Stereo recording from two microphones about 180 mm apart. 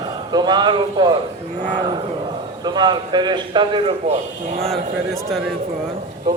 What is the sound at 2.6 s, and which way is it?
A man's voice, 25° right (ahead or behind).